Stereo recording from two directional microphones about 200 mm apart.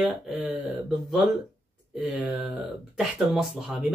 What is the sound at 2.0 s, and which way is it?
Speech, 5° right (ahead or behind).